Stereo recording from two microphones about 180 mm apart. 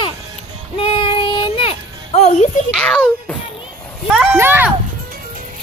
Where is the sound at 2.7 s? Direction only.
5° left (ahead or behind).